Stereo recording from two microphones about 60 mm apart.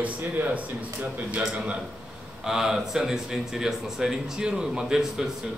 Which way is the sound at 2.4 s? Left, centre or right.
Centre.